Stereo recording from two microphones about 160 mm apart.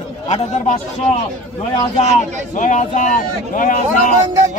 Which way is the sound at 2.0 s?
50° left (ahead or behind).